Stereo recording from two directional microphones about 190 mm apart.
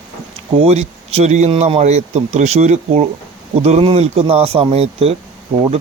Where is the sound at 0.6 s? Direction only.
35° right (ahead or behind).